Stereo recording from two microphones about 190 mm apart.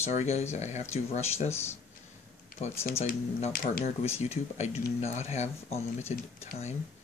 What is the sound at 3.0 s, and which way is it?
Speech, 50° left (ahead or behind).